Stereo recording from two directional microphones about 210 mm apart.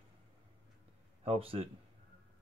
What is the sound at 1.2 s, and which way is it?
Speech, 25° right (ahead or behind).